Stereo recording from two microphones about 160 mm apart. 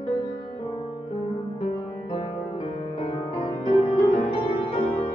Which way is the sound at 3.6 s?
35° left (ahead or behind).